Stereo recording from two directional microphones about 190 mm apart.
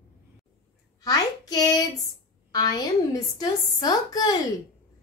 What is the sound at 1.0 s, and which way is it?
A child's voice, 20° left (ahead or behind).